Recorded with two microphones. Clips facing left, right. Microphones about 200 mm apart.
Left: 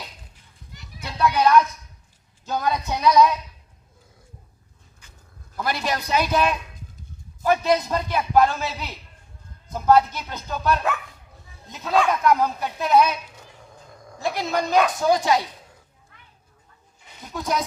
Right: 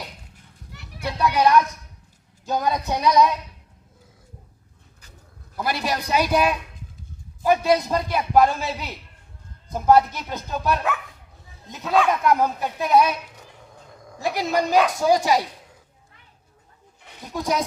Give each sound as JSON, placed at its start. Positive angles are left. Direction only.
{"t": 0.7, "sound": "children playing", "side_deg": -65}
{"t": 1.2, "sound": "a man's voice", "side_deg": -20}
{"t": 5.5, "sound": "a man's voice", "side_deg": -10}
{"t": 11.9, "sound": "a man's voice", "side_deg": -5}
{"t": 14.2, "sound": "a man's voice", "side_deg": -15}
{"t": 17.3, "sound": "a man's voice", "side_deg": -15}